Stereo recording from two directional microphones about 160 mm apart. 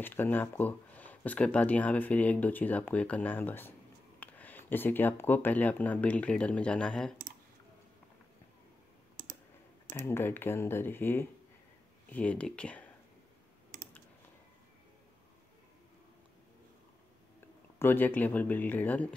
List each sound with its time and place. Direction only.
0.0 s speech: 10° left (ahead or behind)
9.2 s clicking: 55° right (ahead or behind)
9.9 s speech: 15° left (ahead or behind)
17.7 s speech: 15° left (ahead or behind)